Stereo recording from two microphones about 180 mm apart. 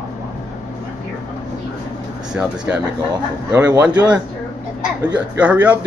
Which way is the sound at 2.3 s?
5° right (ahead or behind).